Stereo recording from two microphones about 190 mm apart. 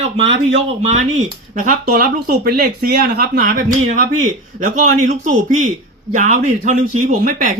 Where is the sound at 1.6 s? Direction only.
50° right (ahead or behind).